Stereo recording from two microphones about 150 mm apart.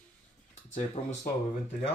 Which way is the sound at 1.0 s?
40° left (ahead or behind).